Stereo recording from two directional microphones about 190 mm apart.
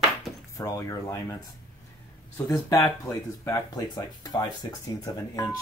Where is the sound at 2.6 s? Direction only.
15° left (ahead or behind).